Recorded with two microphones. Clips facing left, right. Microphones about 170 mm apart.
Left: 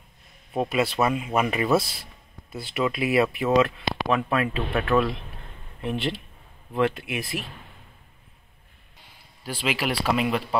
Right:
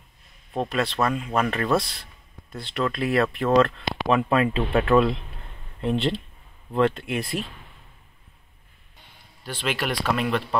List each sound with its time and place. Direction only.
0.5 s speech: 5° left (ahead or behind)
4.1 s speech: 25° right (ahead or behind)
6.8 s speech: 5° left (ahead or behind)
9.4 s speech: 5° left (ahead or behind)